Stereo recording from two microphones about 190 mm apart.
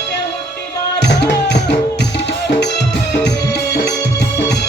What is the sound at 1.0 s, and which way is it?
Music, 60° left (ahead or behind).